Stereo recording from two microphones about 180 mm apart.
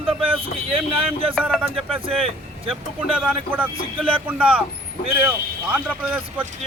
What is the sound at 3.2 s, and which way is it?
Speech, 10° right (ahead or behind).